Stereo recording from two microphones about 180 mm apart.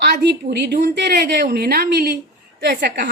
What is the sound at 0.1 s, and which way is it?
A woman's voice, 70° right (ahead or behind).